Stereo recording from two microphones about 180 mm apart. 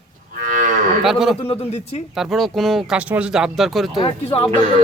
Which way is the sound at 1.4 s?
35° left (ahead or behind).